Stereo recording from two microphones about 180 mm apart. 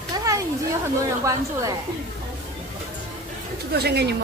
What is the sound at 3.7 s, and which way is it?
Speech, 65° right (ahead or behind).